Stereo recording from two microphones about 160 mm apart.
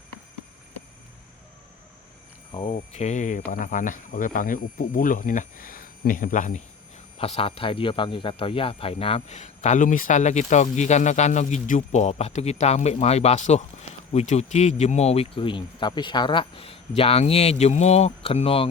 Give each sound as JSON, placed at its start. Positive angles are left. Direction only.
{"t": 2.5, "sound": "speech", "side_deg": 30}
{"t": 2.9, "sound": "speech", "side_deg": 45}
{"t": 7.2, "sound": "speech", "side_deg": 40}